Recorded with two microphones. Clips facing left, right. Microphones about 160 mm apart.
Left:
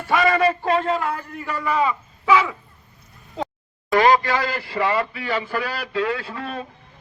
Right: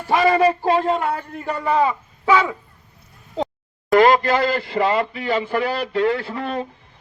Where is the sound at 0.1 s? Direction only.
30° right (ahead or behind).